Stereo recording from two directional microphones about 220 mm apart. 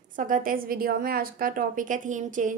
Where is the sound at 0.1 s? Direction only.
35° right (ahead or behind).